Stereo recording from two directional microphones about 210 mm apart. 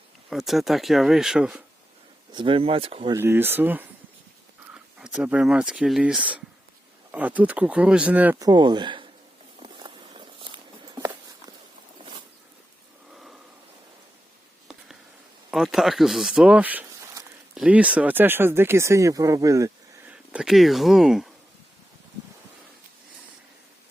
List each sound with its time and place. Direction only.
0.3 s speech: centre (ahead or behind)
2.3 s speech: 25° right (ahead or behind)
3.2 s speech: 10° right (ahead or behind)
9.7 s walk: 20° right (ahead or behind)
15.4 s speech: centre (ahead or behind)